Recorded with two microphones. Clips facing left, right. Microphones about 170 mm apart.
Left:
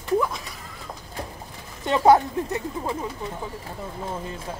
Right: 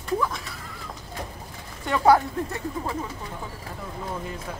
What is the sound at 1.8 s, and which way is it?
Speech, 25° left (ahead or behind).